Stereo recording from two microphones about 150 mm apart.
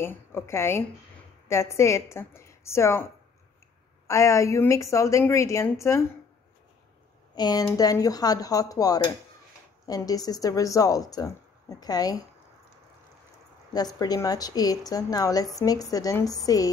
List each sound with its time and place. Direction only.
0.0 s a woman's voice: 15° left (ahead or behind)
4.1 s a woman's voice: 20° left (ahead or behind)
7.3 s a woman's voice: 25° left (ahead or behind)
13.9 s a woman's voice: 25° left (ahead or behind)